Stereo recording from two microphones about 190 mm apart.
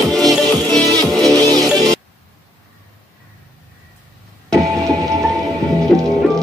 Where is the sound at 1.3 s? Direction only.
20° right (ahead or behind).